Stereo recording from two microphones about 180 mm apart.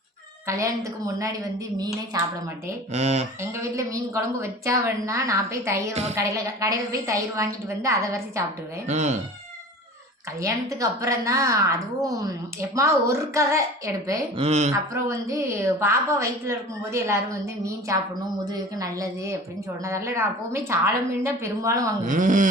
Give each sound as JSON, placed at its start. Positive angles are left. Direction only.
{"t": 0.4, "sound": "a woman's voice", "side_deg": -15}
{"t": 2.9, "sound": "speech", "side_deg": -40}
{"t": 3.4, "sound": "a woman's voice", "side_deg": -15}
{"t": 8.9, "sound": "speech", "side_deg": -40}
{"t": 10.4, "sound": "a woman's voice", "side_deg": -20}
{"t": 12.7, "sound": "a woman's voice", "side_deg": -15}
{"t": 14.3, "sound": "speech", "side_deg": -35}
{"t": 14.7, "sound": "a woman's voice", "side_deg": -15}
{"t": 22.0, "sound": "speech", "side_deg": -45}